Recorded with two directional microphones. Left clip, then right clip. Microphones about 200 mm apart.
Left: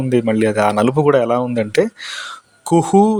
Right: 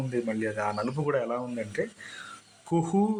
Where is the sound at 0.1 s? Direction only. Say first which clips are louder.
Left 15 dB; 55° left (ahead or behind).